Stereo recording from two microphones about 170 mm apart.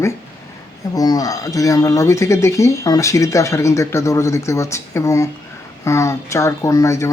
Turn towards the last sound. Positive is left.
turn(degrees=20)  # may be behind; listen again after turning